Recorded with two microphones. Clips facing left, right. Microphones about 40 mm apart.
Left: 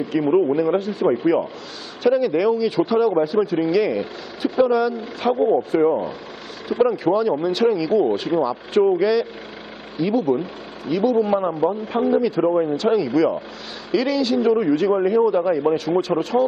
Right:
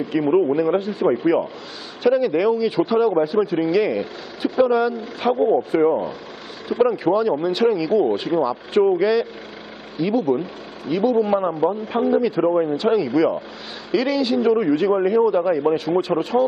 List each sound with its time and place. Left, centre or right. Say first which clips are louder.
0.1 s speech: even; centre
3.1 s a man's voice: even; centre
3.4 s speech: even; centre